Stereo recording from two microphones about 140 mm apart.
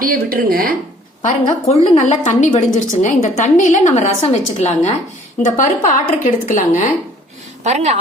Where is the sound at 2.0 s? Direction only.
60° left (ahead or behind).